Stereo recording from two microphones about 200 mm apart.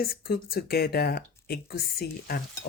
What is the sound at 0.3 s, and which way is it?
Speech, 50° left (ahead or behind).